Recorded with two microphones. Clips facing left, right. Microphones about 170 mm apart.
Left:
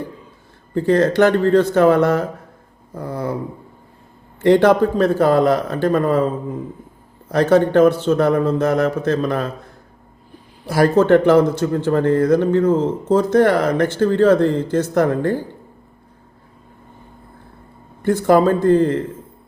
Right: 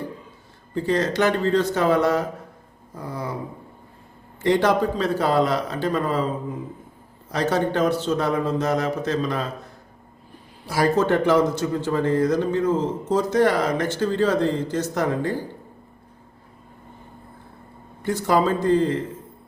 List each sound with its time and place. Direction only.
0.7 s a man's voice: 55° left (ahead or behind)
4.4 s a man's voice: 55° left (ahead or behind)
7.3 s a man's voice: 55° left (ahead or behind)
10.7 s a man's voice: 60° left (ahead or behind)
18.0 s a man's voice: 55° left (ahead or behind)